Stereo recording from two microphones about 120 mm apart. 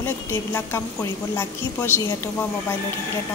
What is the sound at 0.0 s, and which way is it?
Speech, 20° left (ahead or behind).